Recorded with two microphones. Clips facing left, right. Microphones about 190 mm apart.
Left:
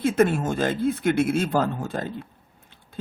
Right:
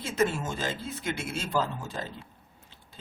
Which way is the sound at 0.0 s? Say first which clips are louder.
Left 7 dB; 55° left (ahead or behind).